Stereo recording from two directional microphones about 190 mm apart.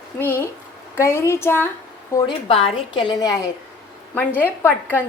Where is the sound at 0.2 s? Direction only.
10° left (ahead or behind).